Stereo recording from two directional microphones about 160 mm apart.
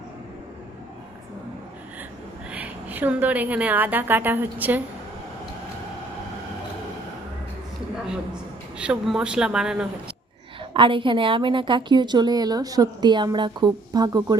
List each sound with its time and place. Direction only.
2.5 s a woman's voice: 10° right (ahead or behind)
8.8 s speech: 5° right (ahead or behind)
10.8 s a woman's voice: 30° right (ahead or behind)